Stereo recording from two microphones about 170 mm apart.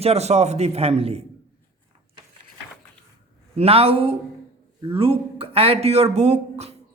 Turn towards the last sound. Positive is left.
turn(degrees=-40)  # may be behind; listen again after turning